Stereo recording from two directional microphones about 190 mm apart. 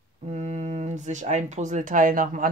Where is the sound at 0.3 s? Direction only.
35° right (ahead or behind).